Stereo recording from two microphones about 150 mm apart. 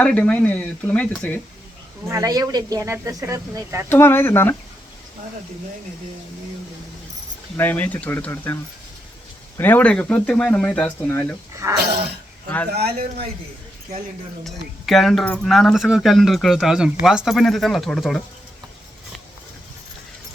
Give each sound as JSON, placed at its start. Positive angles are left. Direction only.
{"t": 0.0, "sound": "speech", "side_deg": 10}
{"t": 2.0, "sound": "speech", "side_deg": -20}
{"t": 3.8, "sound": "speech", "side_deg": 15}
{"t": 7.5, "sound": "speech", "side_deg": 10}
{"t": 9.6, "sound": "speech", "side_deg": 10}
{"t": 11.8, "sound": "speech", "side_deg": -90}
{"t": 14.4, "sound": "speech", "side_deg": 0}